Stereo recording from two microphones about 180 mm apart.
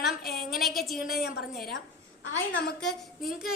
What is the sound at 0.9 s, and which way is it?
Speech, 55° left (ahead or behind).